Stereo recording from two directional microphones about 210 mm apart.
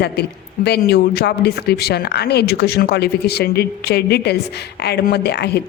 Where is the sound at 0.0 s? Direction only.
50° left (ahead or behind).